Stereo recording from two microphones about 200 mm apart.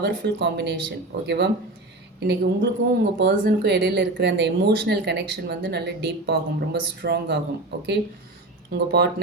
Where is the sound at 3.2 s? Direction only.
45° right (ahead or behind).